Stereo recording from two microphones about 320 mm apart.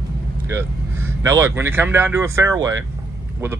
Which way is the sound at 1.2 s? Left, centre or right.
Centre.